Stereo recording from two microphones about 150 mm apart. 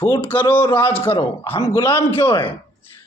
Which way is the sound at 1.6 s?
15° left (ahead or behind).